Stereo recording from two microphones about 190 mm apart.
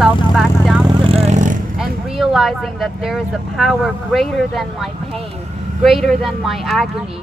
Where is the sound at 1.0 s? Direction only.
30° right (ahead or behind).